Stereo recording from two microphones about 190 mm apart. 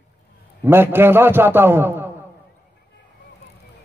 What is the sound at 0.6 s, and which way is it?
A man's voice, 10° right (ahead or behind).